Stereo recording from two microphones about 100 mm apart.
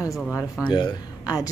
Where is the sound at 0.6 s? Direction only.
50° left (ahead or behind).